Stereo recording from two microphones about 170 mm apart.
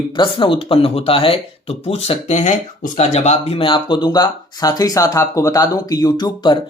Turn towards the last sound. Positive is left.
turn(degrees=25)  # may be behind; listen again after turning